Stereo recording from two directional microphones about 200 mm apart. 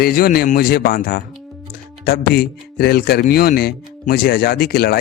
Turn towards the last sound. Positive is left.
turn(degrees=50)  # may be behind; listen again after turning